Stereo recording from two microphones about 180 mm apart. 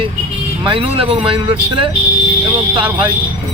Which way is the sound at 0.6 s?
30° right (ahead or behind).